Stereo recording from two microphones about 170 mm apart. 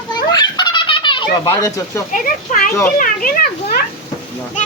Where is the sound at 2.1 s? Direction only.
50° left (ahead or behind).